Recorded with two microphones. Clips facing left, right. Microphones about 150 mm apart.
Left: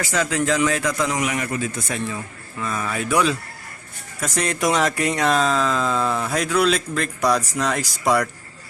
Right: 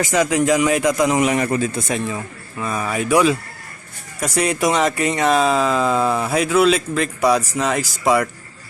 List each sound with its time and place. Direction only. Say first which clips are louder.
0.0 s a man's voice: right 5 dB; 15° right (ahead or behind); by 1.8 s 35° right (ahead or behind)
1.9 s a man's voice: right 4 dB; 20° right (ahead or behind); by 8.3 s 5° right (ahead or behind)